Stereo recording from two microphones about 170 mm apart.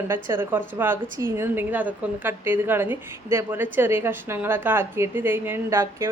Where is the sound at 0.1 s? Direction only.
15° right (ahead or behind).